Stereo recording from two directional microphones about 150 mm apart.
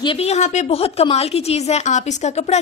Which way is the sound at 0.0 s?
40° left (ahead or behind).